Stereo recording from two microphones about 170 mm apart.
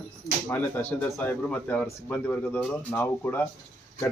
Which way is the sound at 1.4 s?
5° left (ahead or behind).